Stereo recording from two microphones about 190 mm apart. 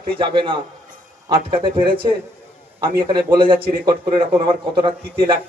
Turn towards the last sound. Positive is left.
turn(degrees=-25)  # may be behind; listen again after turning